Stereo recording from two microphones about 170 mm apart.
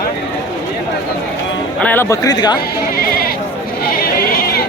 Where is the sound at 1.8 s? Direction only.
10° left (ahead or behind).